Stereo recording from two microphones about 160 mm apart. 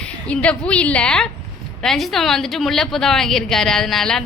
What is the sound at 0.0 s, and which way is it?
A woman's voice, 5° left (ahead or behind).